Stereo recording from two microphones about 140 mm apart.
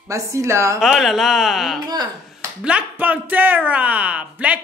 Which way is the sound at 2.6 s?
10° right (ahead or behind).